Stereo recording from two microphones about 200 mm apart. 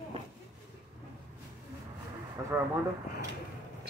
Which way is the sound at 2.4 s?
15° right (ahead or behind).